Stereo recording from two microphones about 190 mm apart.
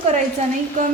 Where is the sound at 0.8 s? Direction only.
45° right (ahead or behind).